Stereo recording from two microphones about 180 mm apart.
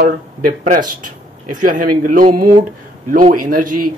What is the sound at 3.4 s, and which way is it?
Speech, 50° right (ahead or behind).